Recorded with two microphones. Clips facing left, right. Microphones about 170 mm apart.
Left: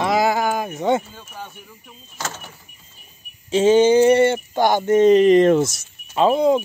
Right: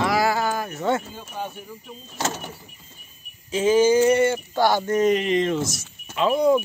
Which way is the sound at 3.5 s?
30° left (ahead or behind).